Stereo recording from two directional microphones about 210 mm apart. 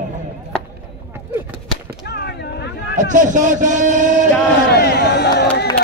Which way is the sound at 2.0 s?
50° left (ahead or behind).